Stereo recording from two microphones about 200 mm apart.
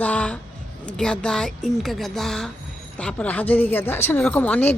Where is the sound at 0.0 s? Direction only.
5° left (ahead or behind).